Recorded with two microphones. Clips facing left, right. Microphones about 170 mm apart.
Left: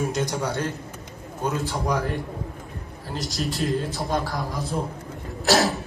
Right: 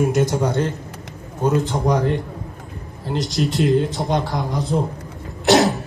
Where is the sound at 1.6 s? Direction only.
20° right (ahead or behind).